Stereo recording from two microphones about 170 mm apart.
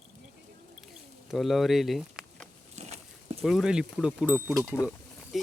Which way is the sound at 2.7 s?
40° right (ahead or behind).